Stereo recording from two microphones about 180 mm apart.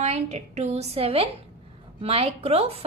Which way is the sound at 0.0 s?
40° right (ahead or behind).